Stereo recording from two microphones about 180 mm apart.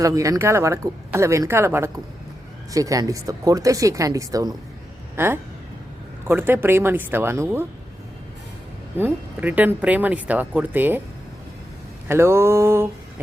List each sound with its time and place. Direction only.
0.0 s speech: 20° right (ahead or behind)
9.0 s speech: 10° right (ahead or behind)
12.0 s speech: 15° right (ahead or behind)